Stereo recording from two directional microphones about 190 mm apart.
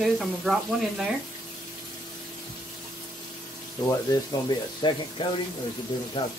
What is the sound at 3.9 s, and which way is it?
Speech, 20° left (ahead or behind).